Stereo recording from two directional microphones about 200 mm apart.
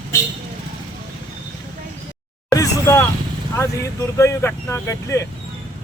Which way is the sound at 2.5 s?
15° left (ahead or behind).